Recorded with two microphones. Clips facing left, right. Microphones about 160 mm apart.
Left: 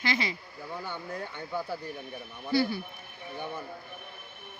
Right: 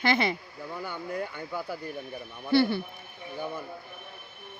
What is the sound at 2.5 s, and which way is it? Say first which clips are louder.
Speech: right 4 dB; 65° right (ahead or behind).